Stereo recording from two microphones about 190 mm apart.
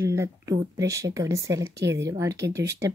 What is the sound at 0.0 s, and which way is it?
Speech, 15° right (ahead or behind).